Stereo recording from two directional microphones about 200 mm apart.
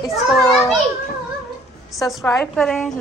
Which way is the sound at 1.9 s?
Centre (ahead or behind).